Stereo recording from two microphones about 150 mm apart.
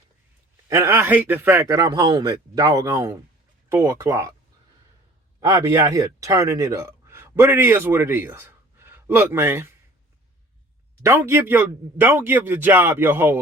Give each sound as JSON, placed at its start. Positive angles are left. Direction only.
{"t": 0.7, "sound": "a man's voice", "side_deg": -15}
{"t": 5.5, "sound": "speech", "side_deg": -25}
{"t": 11.0, "sound": "speech", "side_deg": -20}